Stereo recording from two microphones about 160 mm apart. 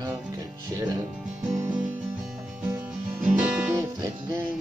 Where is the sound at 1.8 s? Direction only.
5° right (ahead or behind).